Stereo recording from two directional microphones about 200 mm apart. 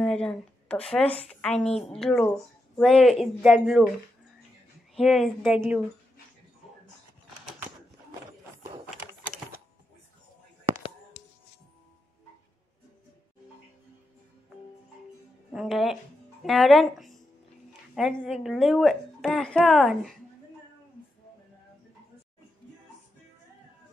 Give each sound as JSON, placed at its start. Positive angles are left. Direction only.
{"t": 0.0, "sound": "a woman's voice", "side_deg": 5}
{"t": 4.9, "sound": "a woman's voice", "side_deg": 0}
{"t": 11.2, "sound": "music", "side_deg": 65}
{"t": 15.5, "sound": "a woman's voice", "side_deg": 0}